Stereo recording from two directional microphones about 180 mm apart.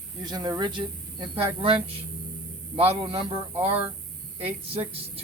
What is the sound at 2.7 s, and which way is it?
Speech, 30° right (ahead or behind).